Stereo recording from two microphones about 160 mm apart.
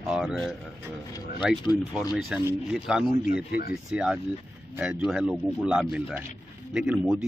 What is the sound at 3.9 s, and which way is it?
Speech, 5° right (ahead or behind).